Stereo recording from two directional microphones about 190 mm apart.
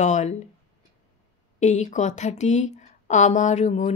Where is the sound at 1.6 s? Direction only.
40° left (ahead or behind).